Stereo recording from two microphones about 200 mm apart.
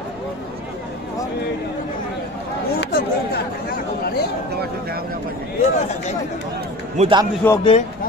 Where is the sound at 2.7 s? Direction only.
50° left (ahead or behind).